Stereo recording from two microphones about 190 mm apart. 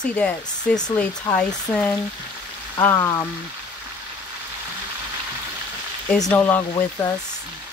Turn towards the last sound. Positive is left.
turn(degrees=20)  # may be behind; listen again after turning